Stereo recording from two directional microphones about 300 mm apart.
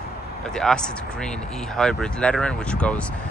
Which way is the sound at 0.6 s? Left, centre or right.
Centre.